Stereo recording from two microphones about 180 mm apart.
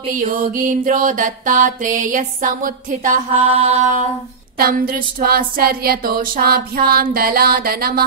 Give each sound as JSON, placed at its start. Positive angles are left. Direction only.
{"t": 0.1, "sound": "music", "side_deg": -50}
{"t": 4.6, "sound": "speech", "side_deg": -55}